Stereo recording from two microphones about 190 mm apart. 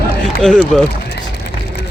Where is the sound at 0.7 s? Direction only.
5° left (ahead or behind).